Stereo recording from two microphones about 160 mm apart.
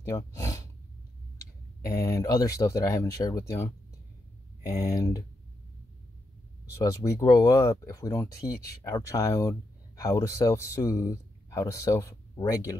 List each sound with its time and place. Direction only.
0.0 s a sound: 20° left (ahead or behind)
1.9 s speech: 20° left (ahead or behind)
6.7 s speech: 20° left (ahead or behind)